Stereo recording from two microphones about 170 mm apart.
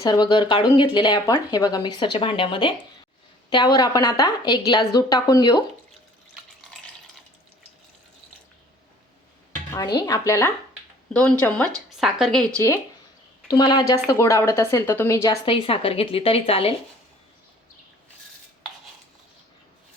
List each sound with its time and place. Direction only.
0.0 s speech: 25° left (ahead or behind)
9.7 s a woman's voice: 20° left (ahead or behind)
11.1 s a woman's voice: 5° left (ahead or behind)
13.5 s a woman's voice: 25° left (ahead or behind)
15.4 s a woman's voice: 30° left (ahead or behind)